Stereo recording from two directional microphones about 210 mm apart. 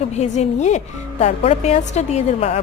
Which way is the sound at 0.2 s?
35° left (ahead or behind).